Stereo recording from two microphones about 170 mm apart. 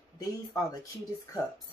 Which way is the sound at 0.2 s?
20° left (ahead or behind).